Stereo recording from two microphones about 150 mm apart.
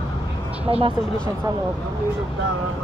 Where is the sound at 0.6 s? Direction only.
40° right (ahead or behind).